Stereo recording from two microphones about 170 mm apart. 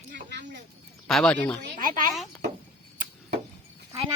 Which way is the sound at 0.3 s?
90° right.